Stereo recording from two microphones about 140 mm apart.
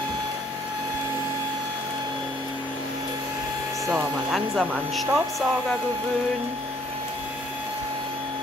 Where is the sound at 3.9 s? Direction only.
5° right (ahead or behind).